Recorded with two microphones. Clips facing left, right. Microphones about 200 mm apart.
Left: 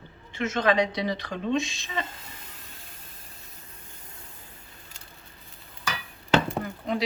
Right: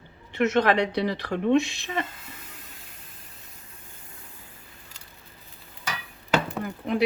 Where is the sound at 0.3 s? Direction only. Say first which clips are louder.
Right 3 dB; 65° right (ahead or behind).